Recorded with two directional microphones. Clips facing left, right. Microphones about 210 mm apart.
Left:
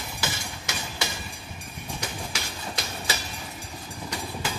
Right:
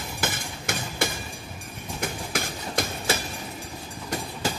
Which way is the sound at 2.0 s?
50° right (ahead or behind).